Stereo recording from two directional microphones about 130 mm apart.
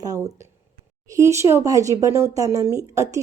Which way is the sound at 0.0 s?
30° right (ahead or behind).